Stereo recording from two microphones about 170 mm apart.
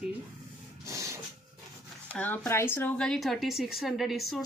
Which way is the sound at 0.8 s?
20° right (ahead or behind).